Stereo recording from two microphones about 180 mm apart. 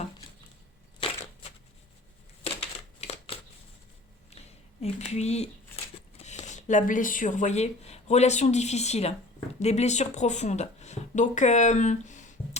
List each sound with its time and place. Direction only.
0.9 s crushing: 30° left (ahead or behind)
4.4 s speech: 35° left (ahead or behind)